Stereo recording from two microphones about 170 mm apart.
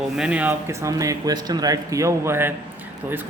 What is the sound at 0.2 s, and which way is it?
Speech, 5° right (ahead or behind).